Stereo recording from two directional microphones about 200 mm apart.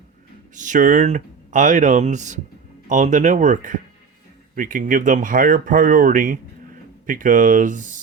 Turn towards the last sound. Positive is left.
turn(degrees=-40)  # may be behind; listen again after turning